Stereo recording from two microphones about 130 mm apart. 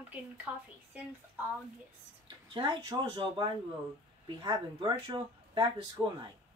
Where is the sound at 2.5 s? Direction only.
35° right (ahead or behind).